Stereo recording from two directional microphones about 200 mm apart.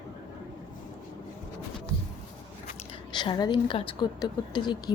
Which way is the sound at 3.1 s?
20° left (ahead or behind).